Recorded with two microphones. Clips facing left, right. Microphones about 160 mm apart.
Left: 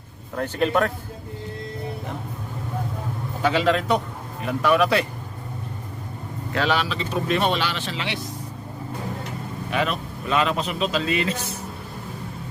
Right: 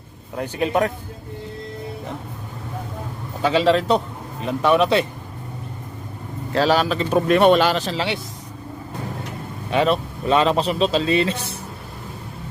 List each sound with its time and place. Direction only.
0.3 s a man's voice: 15° right (ahead or behind)
3.4 s a man's voice: 25° right (ahead or behind)
6.5 s speech: 35° right (ahead or behind)
9.6 s speech: 30° right (ahead or behind)